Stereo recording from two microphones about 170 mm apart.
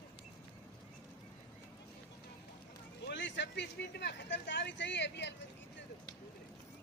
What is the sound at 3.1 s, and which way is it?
Speech, 90° left.